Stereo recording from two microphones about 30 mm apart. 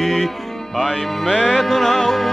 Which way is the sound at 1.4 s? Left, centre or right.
Centre.